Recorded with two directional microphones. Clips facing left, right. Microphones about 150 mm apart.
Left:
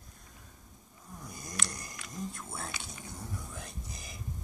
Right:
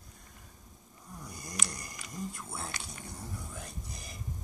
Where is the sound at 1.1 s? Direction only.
5° left (ahead or behind).